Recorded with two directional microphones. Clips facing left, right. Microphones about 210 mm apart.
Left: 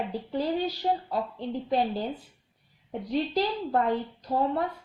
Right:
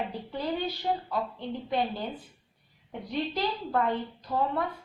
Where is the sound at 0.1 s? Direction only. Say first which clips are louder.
Left 4 dB; 35° left (ahead or behind).